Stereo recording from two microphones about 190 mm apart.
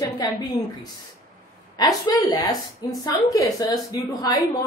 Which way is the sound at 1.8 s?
20° left (ahead or behind).